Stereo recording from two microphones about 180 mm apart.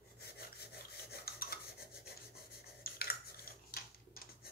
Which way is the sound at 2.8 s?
60° left (ahead or behind).